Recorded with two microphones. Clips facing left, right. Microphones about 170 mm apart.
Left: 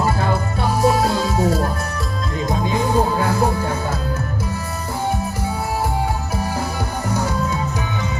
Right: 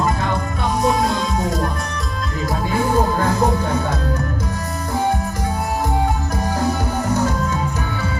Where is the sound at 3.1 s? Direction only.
10° left (ahead or behind).